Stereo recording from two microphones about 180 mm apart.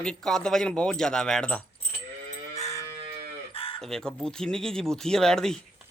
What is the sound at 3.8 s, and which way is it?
Speech, centre (ahead or behind).